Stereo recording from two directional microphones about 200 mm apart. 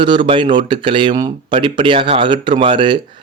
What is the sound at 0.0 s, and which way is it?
Speech, 25° right (ahead or behind).